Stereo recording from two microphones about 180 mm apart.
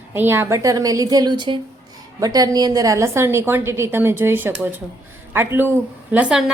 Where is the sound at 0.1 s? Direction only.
15° right (ahead or behind).